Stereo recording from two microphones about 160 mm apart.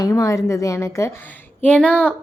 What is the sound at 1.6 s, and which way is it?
Speech, 10° left (ahead or behind).